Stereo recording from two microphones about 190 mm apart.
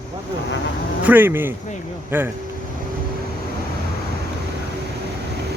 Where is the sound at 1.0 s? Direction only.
10° right (ahead or behind).